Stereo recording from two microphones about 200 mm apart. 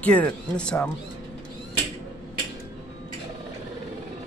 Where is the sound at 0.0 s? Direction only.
5° left (ahead or behind).